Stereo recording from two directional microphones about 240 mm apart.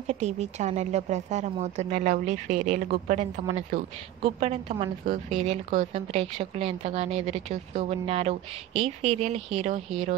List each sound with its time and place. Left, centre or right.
0.0 s a woman's voice: right